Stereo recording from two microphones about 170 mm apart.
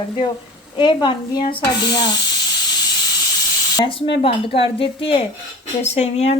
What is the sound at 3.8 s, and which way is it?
Speech, 30° left (ahead or behind).